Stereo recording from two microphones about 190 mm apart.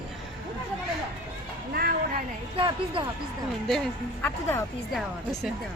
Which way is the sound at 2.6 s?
30° right (ahead or behind).